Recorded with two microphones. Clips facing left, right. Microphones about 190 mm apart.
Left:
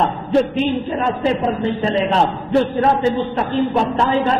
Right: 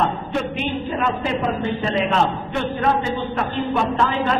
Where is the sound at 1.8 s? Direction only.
35° left (ahead or behind).